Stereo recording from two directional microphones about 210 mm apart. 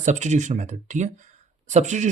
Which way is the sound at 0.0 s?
35° right (ahead or behind).